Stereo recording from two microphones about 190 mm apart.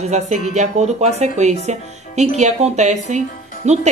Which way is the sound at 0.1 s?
35° right (ahead or behind).